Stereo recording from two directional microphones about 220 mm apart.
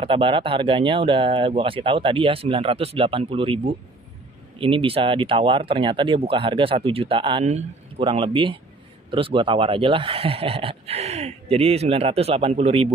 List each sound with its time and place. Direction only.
0.0 s speech: 25° right (ahead or behind)